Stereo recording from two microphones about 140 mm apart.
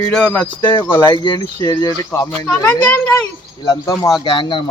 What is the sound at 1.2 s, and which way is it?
Speech, 25° left (ahead or behind).